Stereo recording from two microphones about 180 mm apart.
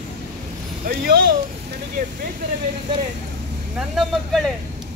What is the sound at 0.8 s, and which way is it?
Speech, 65° right (ahead or behind).